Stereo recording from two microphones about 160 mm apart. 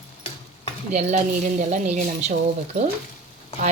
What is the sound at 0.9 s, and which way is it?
Speech, 45° right (ahead or behind).